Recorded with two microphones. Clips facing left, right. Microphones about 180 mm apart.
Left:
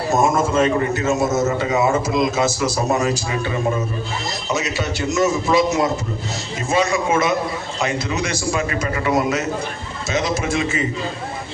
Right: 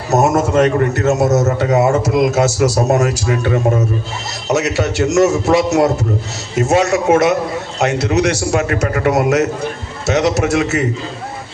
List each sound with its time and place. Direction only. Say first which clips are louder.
0.1 s speech: right 5 dB; 75° right (ahead or behind)